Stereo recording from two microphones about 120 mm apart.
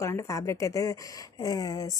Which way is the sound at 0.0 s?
25° left (ahead or behind).